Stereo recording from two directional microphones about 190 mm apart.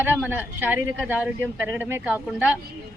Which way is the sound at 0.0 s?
10° right (ahead or behind).